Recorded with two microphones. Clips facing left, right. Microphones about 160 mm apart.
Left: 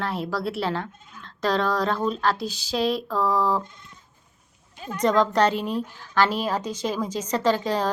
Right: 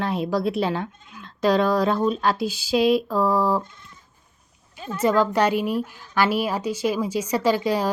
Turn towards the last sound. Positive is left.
turn(degrees=-10)  # may be behind; listen again after turning